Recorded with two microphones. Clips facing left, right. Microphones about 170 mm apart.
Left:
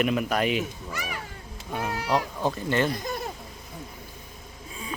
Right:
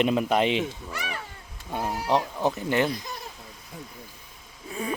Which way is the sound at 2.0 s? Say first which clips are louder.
Right 2 dB; 20° right (ahead or behind).